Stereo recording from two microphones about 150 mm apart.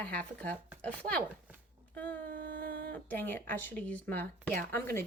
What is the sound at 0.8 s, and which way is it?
Speech, 10° left (ahead or behind).